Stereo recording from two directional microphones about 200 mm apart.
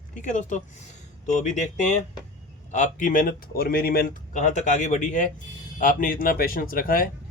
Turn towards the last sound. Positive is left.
turn(degrees=45)  # may be behind; listen again after turning